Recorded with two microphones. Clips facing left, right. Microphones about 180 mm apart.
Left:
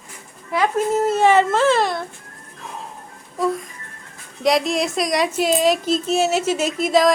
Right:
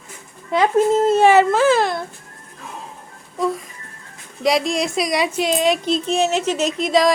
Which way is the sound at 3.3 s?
Centre (ahead or behind).